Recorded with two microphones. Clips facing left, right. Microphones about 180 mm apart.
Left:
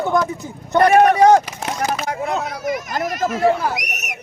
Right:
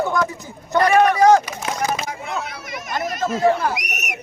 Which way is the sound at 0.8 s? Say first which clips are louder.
Left 3 dB; 55° left (ahead or behind).